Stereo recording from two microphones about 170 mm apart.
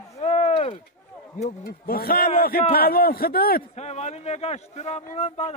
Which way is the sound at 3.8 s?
40° left (ahead or behind).